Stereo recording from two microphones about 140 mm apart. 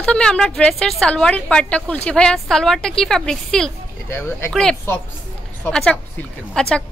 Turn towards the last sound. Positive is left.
turn(degrees=5)  # may be behind; listen again after turning